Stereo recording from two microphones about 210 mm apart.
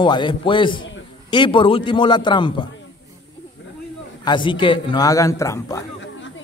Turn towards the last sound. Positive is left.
turn(degrees=15)  # may be behind; listen again after turning